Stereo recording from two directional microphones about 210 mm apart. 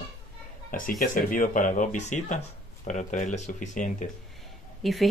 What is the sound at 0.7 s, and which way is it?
Speech, 40° left (ahead or behind).